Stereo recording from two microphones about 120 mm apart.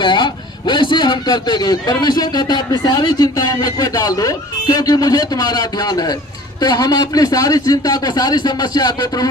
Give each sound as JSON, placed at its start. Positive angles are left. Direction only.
{"t": 0.0, "sound": "a man's voice", "side_deg": 40}